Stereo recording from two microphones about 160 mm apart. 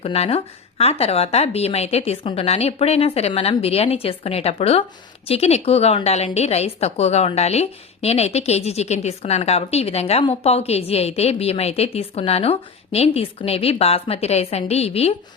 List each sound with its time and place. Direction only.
0.0 s a woman's voice: 40° left (ahead or behind)